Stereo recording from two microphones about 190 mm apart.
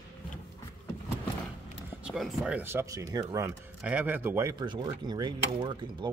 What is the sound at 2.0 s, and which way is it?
Speech, 5° right (ahead or behind).